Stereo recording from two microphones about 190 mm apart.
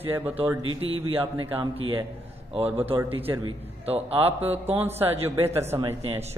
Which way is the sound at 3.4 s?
30° right (ahead or behind).